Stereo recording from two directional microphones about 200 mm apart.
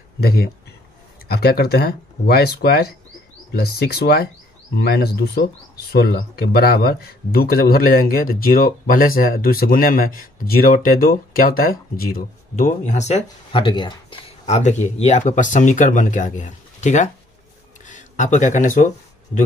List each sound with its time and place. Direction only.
1.3 s speech: 50° left (ahead or behind)